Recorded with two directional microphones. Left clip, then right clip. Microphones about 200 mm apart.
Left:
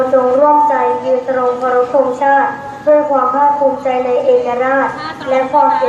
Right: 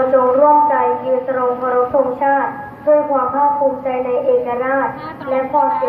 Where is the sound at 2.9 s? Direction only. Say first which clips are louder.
Left 3 dB; 55° left (ahead or behind).